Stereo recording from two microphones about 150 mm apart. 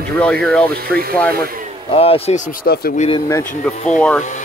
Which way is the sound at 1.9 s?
40° left (ahead or behind).